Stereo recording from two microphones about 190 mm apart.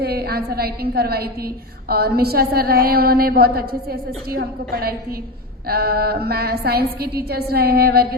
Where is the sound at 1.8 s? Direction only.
55° right (ahead or behind).